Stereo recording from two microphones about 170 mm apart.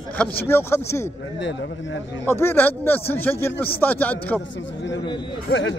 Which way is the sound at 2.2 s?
15° left (ahead or behind).